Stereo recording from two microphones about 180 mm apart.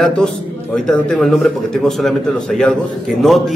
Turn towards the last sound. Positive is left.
turn(degrees=0)  # may be behind; listen again after turning